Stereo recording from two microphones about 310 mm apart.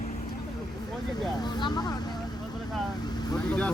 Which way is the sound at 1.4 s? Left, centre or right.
Centre.